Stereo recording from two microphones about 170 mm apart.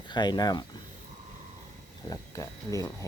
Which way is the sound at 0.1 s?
25° left (ahead or behind).